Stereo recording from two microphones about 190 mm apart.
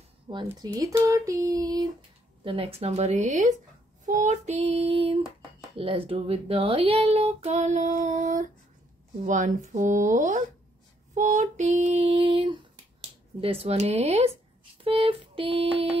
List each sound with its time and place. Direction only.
0.3 s speech: 20° right (ahead or behind)
2.4 s speech: 30° right (ahead or behind)
14.8 s a sound: 30° right (ahead or behind)